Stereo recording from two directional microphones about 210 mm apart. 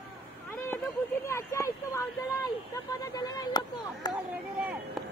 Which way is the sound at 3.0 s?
20° left (ahead or behind).